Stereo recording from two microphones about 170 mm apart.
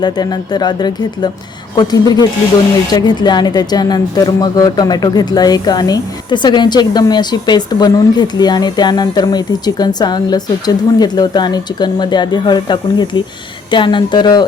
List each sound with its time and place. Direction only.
0.0 s speech: 25° left (ahead or behind)